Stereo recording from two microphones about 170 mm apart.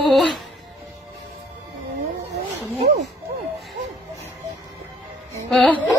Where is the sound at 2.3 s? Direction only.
40° right (ahead or behind).